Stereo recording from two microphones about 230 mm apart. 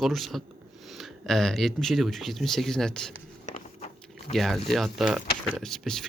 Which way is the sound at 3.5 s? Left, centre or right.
Left.